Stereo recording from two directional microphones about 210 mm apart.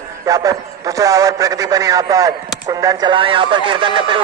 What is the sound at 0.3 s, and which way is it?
A man's voice, 15° right (ahead or behind).